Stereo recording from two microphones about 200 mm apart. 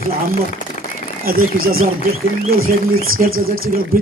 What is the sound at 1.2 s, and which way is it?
Speech, 45° right (ahead or behind).